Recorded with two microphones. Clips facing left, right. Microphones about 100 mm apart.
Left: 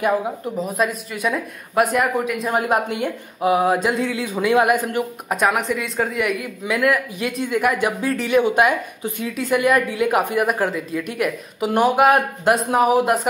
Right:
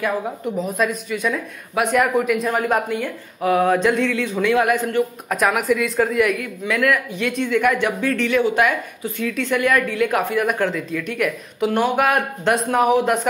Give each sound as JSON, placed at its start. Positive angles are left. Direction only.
{"t": 0.6, "sound": "speech", "side_deg": 0}
{"t": 2.5, "sound": "speech", "side_deg": 20}
{"t": 5.3, "sound": "speech", "side_deg": 0}
{"t": 6.6, "sound": "speech", "side_deg": 15}